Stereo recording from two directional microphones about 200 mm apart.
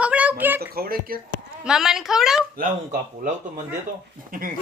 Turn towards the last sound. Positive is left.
turn(degrees=-45)  # may be behind; listen again after turning